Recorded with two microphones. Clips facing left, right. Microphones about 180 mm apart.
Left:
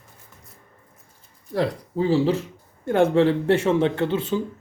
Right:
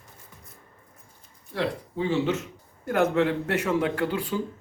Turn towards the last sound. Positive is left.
turn(degrees=25)  # may be behind; listen again after turning